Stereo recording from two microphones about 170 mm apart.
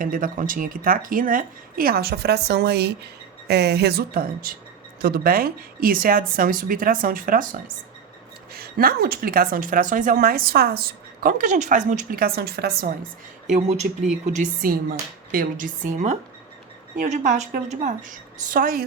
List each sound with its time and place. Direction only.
0.0 s speech: 55° right (ahead or behind)
8.5 s speech: 60° right (ahead or behind)
13.5 s speech: 40° right (ahead or behind); by 18.9 s 60° right (ahead or behind)